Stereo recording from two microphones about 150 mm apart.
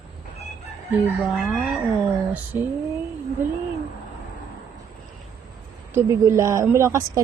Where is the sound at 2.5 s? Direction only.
15° right (ahead or behind).